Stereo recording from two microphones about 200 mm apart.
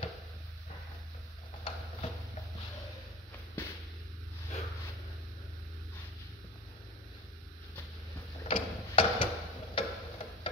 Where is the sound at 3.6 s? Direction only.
10° left (ahead or behind).